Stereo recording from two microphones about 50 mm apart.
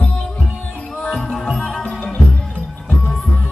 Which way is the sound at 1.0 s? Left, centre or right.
Centre.